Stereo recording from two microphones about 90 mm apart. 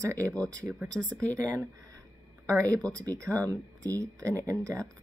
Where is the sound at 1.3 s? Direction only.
35° right (ahead or behind).